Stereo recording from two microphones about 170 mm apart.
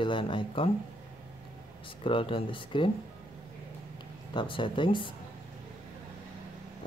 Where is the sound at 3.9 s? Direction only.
30° left (ahead or behind).